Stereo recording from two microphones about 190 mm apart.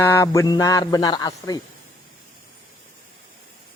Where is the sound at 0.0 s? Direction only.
15° left (ahead or behind).